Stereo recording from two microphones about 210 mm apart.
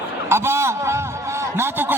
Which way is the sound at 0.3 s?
10° right (ahead or behind).